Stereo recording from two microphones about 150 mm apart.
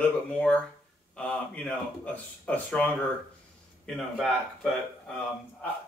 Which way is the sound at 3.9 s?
5° left (ahead or behind).